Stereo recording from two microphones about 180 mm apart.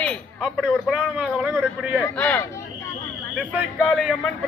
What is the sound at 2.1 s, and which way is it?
Speech, 10° left (ahead or behind).